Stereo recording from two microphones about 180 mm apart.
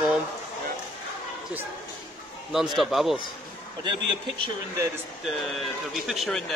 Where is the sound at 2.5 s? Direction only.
Centre (ahead or behind).